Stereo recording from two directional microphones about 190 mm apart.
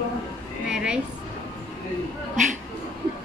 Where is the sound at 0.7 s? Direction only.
5° right (ahead or behind).